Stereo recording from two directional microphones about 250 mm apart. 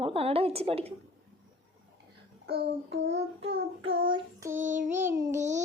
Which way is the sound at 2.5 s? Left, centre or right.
Right.